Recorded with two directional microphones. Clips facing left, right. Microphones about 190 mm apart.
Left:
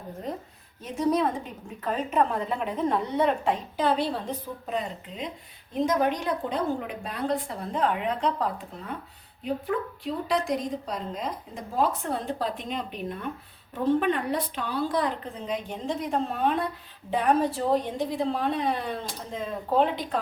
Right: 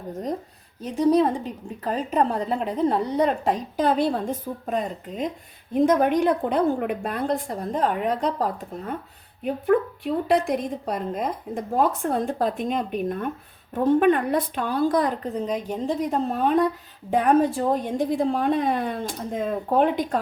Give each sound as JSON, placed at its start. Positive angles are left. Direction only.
{"t": 0.8, "sound": "a woman's voice", "side_deg": -35}
{"t": 9.4, "sound": "a woman's voice", "side_deg": -55}